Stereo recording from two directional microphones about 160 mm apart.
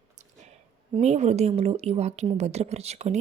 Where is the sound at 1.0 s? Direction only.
45° right (ahead or behind).